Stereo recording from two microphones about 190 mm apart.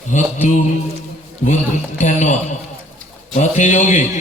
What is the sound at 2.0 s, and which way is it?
A man's voice, 40° left (ahead or behind).